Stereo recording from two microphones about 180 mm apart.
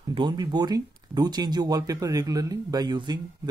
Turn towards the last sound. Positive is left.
turn(degrees=-25)  # may be behind; listen again after turning